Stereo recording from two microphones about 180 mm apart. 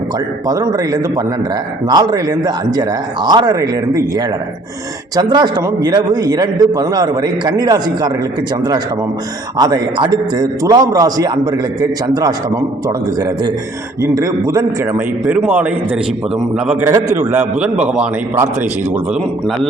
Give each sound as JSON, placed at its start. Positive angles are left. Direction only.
{"t": 0.4, "sound": "a man's voice", "side_deg": -20}
{"t": 9.6, "sound": "a man's voice", "side_deg": -20}
{"t": 16.9, "sound": "a man's voice", "side_deg": -15}